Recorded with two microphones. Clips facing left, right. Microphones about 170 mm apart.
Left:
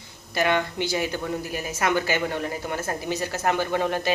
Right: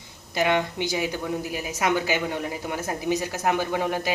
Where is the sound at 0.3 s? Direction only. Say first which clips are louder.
Even; 15° right (ahead or behind).